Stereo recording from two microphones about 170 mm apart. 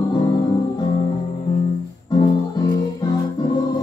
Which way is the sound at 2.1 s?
25° left (ahead or behind).